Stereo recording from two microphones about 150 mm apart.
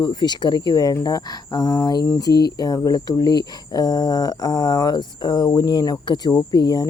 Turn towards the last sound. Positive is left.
turn(degrees=25)  # may be behind; listen again after turning